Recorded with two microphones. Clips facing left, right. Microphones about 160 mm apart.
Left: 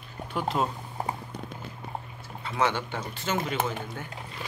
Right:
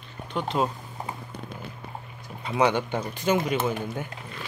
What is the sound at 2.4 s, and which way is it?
Speech, 15° right (ahead or behind).